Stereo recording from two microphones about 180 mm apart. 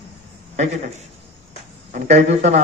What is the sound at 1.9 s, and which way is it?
Speech, 40° right (ahead or behind).